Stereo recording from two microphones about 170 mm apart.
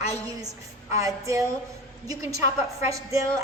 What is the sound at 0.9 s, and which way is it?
A woman's voice, 20° right (ahead or behind).